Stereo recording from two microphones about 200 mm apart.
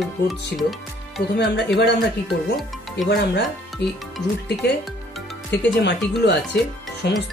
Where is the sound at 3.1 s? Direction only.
55° left (ahead or behind).